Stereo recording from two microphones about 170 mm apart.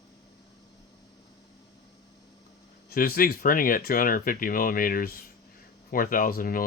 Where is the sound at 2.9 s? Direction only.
60° left (ahead or behind).